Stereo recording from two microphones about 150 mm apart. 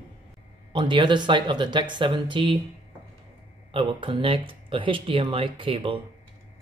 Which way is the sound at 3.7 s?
35° right (ahead or behind).